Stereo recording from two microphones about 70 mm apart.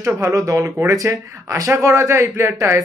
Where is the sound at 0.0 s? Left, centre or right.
Right.